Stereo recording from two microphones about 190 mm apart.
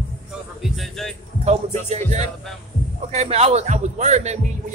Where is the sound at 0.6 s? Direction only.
Centre (ahead or behind).